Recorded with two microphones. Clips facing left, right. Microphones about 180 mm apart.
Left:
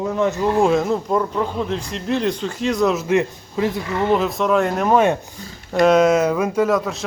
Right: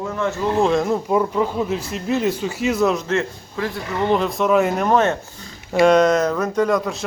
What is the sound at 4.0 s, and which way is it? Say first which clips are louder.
Speech: even; centre (ahead or behind).